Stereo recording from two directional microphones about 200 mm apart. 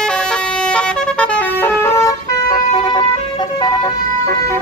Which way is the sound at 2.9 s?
20° left (ahead or behind).